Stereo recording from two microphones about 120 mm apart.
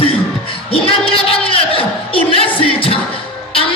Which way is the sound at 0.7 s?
50° left (ahead or behind).